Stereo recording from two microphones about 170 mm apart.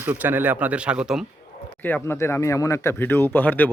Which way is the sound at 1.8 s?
10° left (ahead or behind).